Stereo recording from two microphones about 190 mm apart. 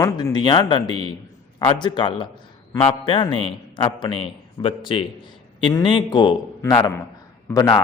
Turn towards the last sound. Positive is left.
turn(degrees=20)  # may be behind; listen again after turning